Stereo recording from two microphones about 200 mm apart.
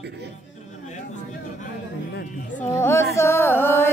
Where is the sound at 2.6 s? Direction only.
15° left (ahead or behind).